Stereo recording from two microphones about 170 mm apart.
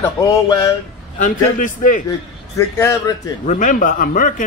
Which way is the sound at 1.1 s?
50° left (ahead or behind).